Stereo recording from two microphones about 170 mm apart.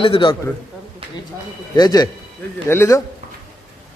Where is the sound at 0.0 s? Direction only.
30° left (ahead or behind).